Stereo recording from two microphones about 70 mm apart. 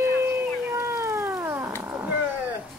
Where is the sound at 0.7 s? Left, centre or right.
Right.